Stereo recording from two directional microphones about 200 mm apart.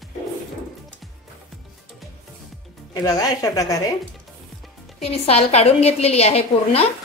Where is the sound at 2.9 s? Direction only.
20° left (ahead or behind).